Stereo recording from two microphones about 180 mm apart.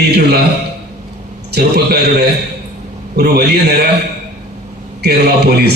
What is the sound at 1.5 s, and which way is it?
A man's voice, 65° right (ahead or behind).